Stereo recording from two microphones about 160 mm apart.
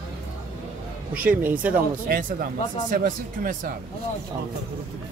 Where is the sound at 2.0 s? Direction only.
60° right (ahead or behind).